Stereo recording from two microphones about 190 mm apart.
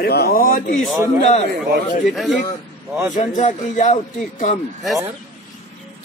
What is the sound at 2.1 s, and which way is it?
Speech, centre (ahead or behind).